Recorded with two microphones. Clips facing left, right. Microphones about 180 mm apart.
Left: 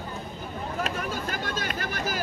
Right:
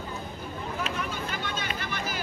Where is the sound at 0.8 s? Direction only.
45° left (ahead or behind).